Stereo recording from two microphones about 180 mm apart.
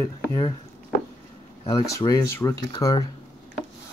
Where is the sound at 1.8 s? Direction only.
20° left (ahead or behind).